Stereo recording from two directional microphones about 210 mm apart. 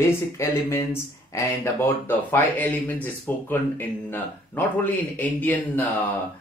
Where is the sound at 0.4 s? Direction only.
10° left (ahead or behind).